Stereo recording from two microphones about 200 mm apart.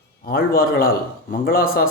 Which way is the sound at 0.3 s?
50° left (ahead or behind).